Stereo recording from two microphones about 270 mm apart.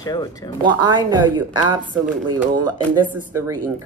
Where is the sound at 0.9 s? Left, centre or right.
Centre.